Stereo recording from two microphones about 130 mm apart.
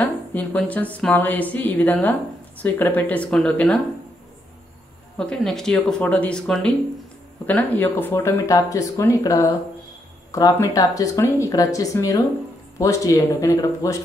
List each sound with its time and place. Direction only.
0.0 s a woman's voice: 10° left (ahead or behind)
5.1 s speech: 5° left (ahead or behind); by 13.9 s 25° left (ahead or behind)